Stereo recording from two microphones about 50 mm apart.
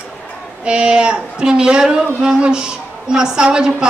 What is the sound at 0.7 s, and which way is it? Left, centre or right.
A man's voice, right.